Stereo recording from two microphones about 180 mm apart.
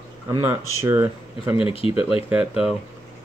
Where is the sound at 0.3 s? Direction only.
15° right (ahead or behind).